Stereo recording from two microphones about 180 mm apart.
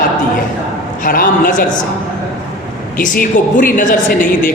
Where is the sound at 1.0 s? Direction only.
50° left (ahead or behind).